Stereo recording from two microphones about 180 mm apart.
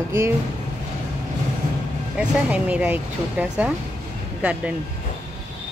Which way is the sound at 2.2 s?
5° right (ahead or behind).